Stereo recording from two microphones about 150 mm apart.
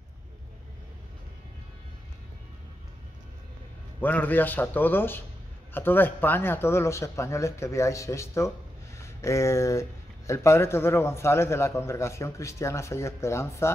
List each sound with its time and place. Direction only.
4.0 s a man's voice: 10° left (ahead or behind)